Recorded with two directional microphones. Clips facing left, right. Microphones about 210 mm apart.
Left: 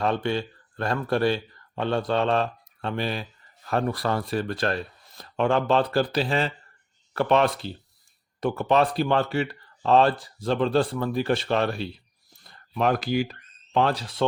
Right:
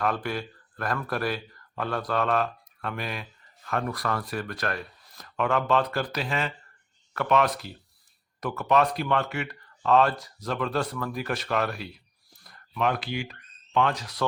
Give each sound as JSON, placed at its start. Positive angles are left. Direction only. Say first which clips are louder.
{"t": 0.0, "sound": "speech", "louder": "left 4 dB", "side_deg": 25}
{"t": 12.4, "sound": "a sound", "louder": "left 5 dB", "side_deg": 25}
{"t": 12.8, "sound": "speech", "louder": "left 5 dB", "side_deg": 40}